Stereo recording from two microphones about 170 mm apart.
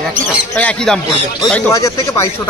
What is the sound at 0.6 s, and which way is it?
Speech, 5° left (ahead or behind).